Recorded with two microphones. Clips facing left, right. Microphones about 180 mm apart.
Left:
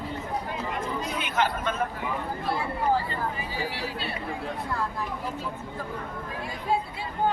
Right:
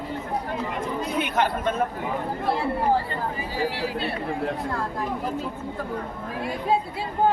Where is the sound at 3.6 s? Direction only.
50° right (ahead or behind).